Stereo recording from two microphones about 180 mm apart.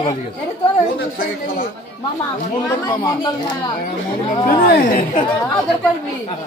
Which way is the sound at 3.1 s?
25° left (ahead or behind).